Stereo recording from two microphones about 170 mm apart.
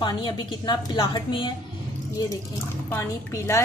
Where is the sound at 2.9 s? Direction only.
15° left (ahead or behind).